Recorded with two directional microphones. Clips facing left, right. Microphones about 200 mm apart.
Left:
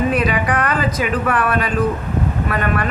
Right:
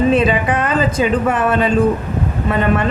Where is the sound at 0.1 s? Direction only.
25° right (ahead or behind).